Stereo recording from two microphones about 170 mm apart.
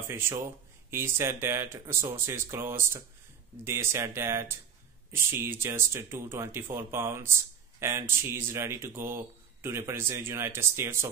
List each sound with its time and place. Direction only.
0.1 s speech: 15° right (ahead or behind)